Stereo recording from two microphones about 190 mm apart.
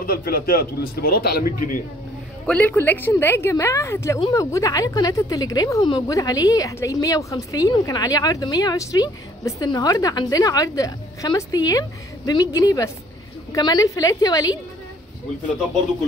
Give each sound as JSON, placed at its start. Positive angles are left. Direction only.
{"t": 0.0, "sound": "speech", "side_deg": 55}
{"t": 2.4, "sound": "a woman's voice", "side_deg": 5}